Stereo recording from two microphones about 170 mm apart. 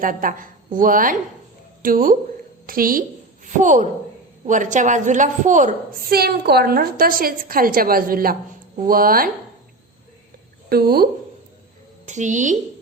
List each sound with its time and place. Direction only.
0.0 s a woman's voice: 55° right (ahead or behind)
10.7 s a woman's voice: 65° right (ahead or behind)
12.0 s speech: 45° right (ahead or behind)